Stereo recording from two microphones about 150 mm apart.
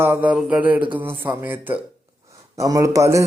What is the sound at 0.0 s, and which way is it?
A man's voice, 10° right (ahead or behind).